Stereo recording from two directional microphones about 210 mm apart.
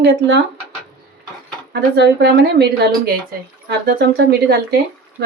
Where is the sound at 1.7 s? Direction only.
55° right (ahead or behind).